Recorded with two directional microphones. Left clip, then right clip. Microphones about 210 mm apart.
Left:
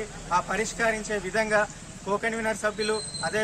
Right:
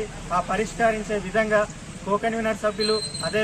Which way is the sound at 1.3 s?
20° left (ahead or behind).